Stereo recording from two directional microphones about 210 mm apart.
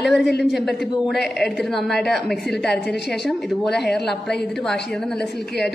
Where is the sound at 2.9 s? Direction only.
50° left (ahead or behind).